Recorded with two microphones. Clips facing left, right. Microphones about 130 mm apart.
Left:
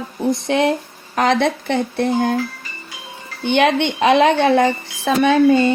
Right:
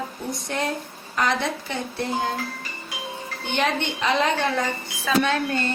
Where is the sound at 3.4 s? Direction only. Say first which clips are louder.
Left 9 dB; 70° left (ahead or behind).